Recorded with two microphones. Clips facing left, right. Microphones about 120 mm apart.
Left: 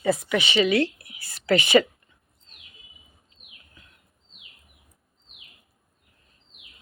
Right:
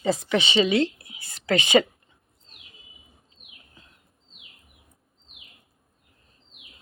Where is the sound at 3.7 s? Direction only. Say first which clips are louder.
Right 1 dB; 30° right (ahead or behind).